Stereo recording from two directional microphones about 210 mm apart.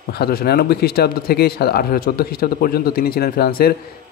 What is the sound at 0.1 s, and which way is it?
Speech, 50° left (ahead or behind).